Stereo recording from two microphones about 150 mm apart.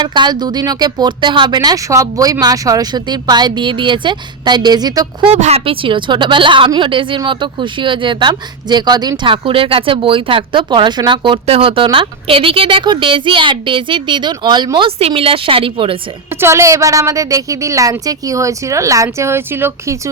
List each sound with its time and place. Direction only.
0.0 s speech: 30° right (ahead or behind)
5.3 s a woman's voice: 45° right (ahead or behind)
16.4 s speech: 20° right (ahead or behind)